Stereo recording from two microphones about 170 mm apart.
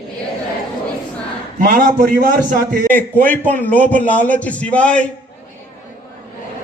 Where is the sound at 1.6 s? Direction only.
50° right (ahead or behind).